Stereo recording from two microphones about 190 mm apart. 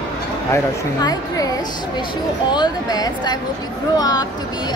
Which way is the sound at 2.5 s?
20° left (ahead or behind).